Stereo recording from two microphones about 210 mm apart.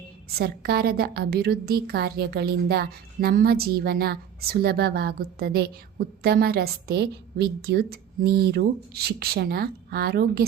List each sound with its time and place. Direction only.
0.3 s a woman's voice: 45° right (ahead or behind)